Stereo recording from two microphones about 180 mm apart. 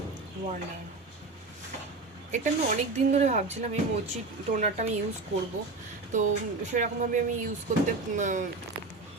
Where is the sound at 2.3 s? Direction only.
45° right (ahead or behind).